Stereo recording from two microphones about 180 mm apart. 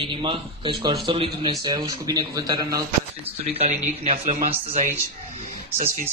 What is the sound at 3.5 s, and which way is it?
Speech, 40° right (ahead or behind).